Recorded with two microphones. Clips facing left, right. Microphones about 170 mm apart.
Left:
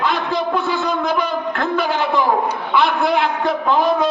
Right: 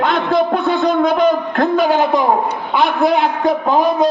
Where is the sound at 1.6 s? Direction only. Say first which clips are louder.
Right 6 dB; 45° right (ahead or behind).